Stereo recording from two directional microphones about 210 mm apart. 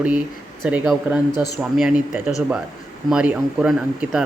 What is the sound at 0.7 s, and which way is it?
Speech, 5° right (ahead or behind).